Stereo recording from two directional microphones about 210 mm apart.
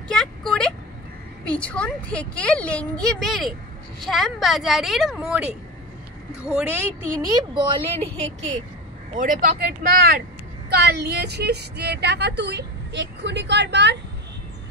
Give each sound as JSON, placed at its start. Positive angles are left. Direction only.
{"t": 0.1, "sound": "vehicle", "side_deg": 0}
{"t": 1.4, "sound": "a woman's voice", "side_deg": 5}
{"t": 7.2, "sound": "a woman's voice", "side_deg": -20}